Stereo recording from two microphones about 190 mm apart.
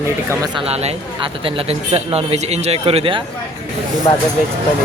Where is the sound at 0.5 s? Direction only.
35° right (ahead or behind).